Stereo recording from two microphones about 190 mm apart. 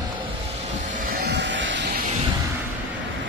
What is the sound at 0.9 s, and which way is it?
Vehicle, 55° right (ahead or behind).